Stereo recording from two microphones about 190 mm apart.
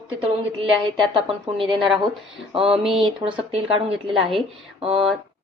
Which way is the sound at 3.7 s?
30° right (ahead or behind).